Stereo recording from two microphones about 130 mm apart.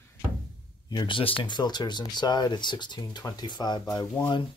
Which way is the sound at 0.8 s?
35° left (ahead or behind).